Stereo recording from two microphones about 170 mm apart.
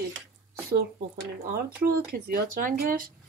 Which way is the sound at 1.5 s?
60° right (ahead or behind).